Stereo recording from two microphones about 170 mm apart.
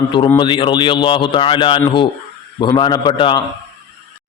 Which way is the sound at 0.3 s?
30° left (ahead or behind).